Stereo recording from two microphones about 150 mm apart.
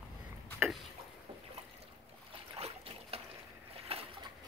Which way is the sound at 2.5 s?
45° right (ahead or behind).